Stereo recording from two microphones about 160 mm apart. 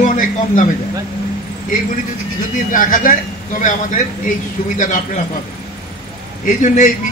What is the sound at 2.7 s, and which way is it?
Speech, 60° left (ahead or behind).